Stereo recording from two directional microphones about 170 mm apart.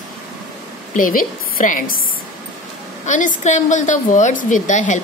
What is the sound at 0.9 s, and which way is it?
Speech, 50° left (ahead or behind).